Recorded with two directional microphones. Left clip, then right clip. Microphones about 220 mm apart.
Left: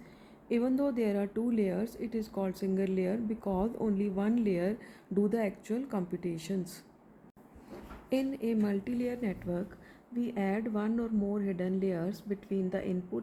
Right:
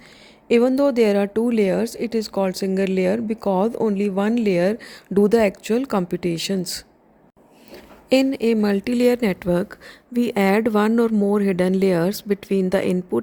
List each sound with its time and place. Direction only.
0.4 s speech: 40° right (ahead or behind)
8.1 s speech: 45° right (ahead or behind)